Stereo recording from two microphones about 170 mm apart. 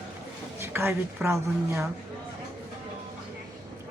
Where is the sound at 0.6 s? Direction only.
15° right (ahead or behind).